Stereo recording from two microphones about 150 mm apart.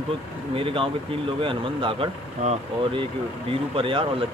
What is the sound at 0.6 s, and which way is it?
Speech, 35° right (ahead or behind).